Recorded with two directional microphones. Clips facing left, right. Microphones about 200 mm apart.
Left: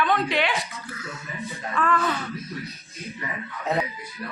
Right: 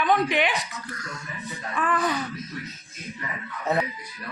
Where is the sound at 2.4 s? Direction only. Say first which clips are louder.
Left 1 dB; 10° left (ahead or behind).